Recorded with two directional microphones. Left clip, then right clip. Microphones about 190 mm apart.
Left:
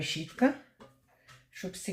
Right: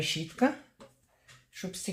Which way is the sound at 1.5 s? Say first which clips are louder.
Right 1 dB; 15° right (ahead or behind).